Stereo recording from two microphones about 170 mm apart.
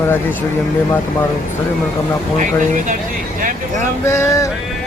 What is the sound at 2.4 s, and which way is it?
Speech, 50° right (ahead or behind).